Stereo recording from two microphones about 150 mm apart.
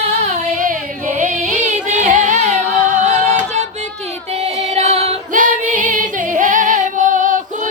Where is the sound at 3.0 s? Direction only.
50° right (ahead or behind).